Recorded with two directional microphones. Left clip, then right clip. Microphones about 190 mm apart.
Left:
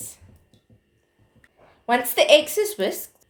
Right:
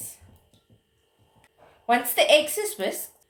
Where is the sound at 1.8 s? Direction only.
50° left (ahead or behind).